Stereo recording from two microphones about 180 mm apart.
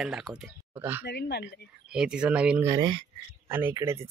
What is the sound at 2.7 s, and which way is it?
Speech, 25° right (ahead or behind).